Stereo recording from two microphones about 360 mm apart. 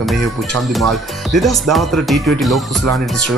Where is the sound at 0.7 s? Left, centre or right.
Centre.